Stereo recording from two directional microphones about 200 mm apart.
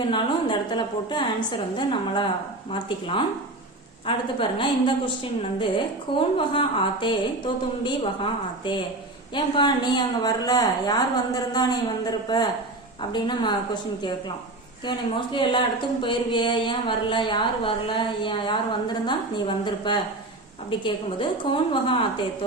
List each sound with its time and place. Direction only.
0.1 s speech: 25° left (ahead or behind)
9.3 s speech: 20° left (ahead or behind)
14.8 s speech: 25° left (ahead or behind)